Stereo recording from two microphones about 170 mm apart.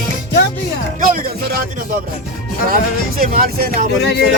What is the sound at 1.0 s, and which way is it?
Music, 60° right (ahead or behind).